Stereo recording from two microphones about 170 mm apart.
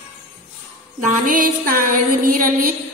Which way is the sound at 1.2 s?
55° right (ahead or behind).